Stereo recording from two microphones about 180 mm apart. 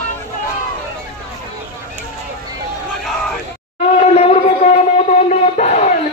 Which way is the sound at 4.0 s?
35° left (ahead or behind).